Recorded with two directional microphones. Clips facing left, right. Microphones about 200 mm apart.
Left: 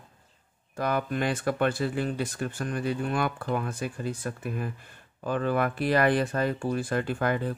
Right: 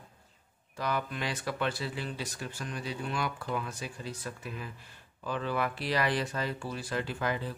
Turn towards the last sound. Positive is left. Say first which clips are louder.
# left 6 dB
turn(degrees=55)  # may be behind; listen again after turning